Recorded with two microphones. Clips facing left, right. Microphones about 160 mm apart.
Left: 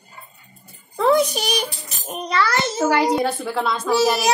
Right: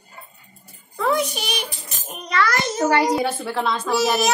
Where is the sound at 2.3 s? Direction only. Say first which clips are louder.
Even; 30° left (ahead or behind).